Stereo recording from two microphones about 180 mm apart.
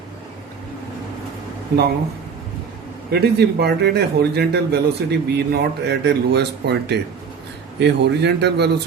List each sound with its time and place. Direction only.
3.1 s a man's voice: 65° right (ahead or behind)